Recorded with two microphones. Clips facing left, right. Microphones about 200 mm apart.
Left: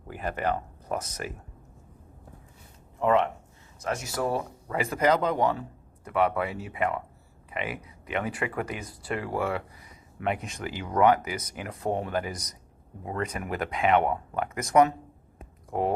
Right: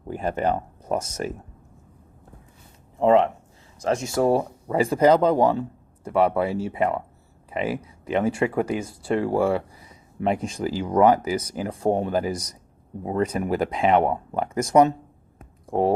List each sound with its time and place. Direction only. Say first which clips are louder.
0.1 s speech: right 5 dB; 30° right (ahead or behind)
3.0 s speech: right 6 dB; 30° right (ahead or behind)